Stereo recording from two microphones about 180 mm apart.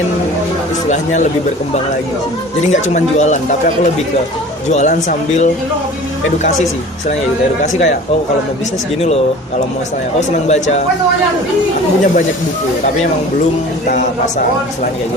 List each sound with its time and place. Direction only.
0.9 s speech: 40° left (ahead or behind)
2.9 s speech: 40° left (ahead or behind)
4.7 s speech: 40° left (ahead or behind)
10.2 s speech: 40° left (ahead or behind)
13.8 s speech: 45° left (ahead or behind)